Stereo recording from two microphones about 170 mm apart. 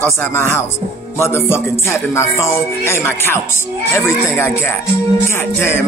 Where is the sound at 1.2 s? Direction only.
15° left (ahead or behind).